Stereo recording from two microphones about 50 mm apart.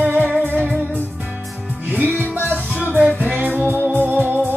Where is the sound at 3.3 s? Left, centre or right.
Right.